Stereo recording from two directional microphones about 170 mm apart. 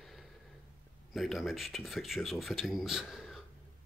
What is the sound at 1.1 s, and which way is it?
Speech, centre (ahead or behind).